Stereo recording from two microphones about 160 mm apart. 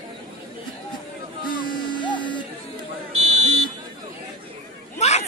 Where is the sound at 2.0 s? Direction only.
30° left (ahead or behind).